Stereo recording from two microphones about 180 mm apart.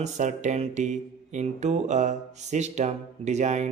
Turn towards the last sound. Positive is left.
turn(degrees=-40)  # may be behind; listen again after turning